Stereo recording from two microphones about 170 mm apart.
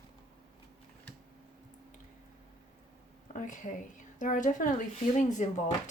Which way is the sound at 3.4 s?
50° left (ahead or behind).